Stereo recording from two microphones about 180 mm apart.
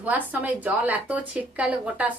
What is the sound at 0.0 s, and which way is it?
Speech, 10° right (ahead or behind).